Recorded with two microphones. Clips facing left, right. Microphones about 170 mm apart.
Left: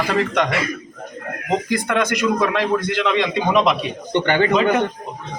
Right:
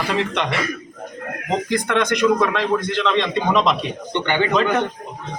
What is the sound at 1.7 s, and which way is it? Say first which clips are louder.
Speech: right 3 dB; 5° left (ahead or behind).